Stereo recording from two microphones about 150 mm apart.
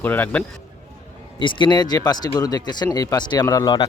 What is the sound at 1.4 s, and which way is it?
Speech, 35° left (ahead or behind).